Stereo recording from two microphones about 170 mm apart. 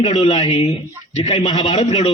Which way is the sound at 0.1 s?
25° left (ahead or behind).